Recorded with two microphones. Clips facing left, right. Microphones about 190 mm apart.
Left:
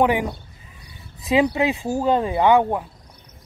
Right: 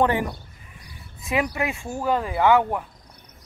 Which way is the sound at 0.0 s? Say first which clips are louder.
Left 2 dB; 10° left (ahead or behind).